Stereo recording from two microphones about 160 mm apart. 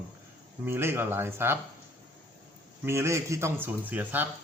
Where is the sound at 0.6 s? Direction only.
15° right (ahead or behind).